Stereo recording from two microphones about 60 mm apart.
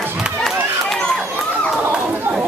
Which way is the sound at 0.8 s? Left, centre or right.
Centre.